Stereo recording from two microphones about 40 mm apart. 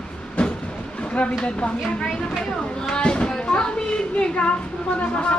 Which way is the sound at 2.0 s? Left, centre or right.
Centre.